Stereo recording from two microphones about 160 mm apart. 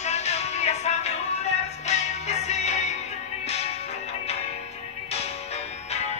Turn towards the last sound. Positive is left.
turn(degrees=40)  # may be behind; listen again after turning